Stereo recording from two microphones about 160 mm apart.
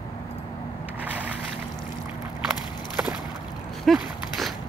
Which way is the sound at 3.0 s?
15° right (ahead or behind).